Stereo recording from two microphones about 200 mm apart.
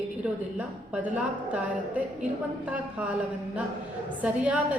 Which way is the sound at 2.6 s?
5° right (ahead or behind).